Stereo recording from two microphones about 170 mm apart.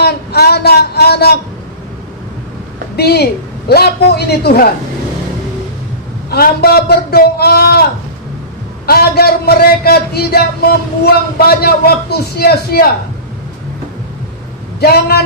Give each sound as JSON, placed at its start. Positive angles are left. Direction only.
{"t": 0.0, "sound": "a sound", "side_deg": 70}
{"t": 2.9, "sound": "a woman's voice", "side_deg": 70}
{"t": 6.3, "sound": "a man's voice", "side_deg": 65}
{"t": 8.9, "sound": "a man's voice", "side_deg": 65}
{"t": 14.8, "sound": "a man's voice", "side_deg": 65}